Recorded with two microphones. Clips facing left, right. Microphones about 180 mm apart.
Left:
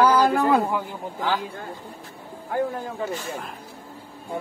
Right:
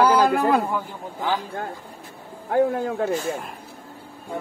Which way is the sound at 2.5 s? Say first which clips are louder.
Right 6 dB; 65° right (ahead or behind).